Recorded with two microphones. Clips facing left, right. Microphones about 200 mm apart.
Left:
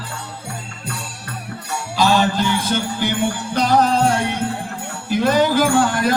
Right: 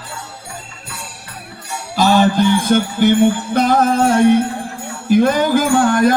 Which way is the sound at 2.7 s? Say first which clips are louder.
Right 8 dB; 50° right (ahead or behind).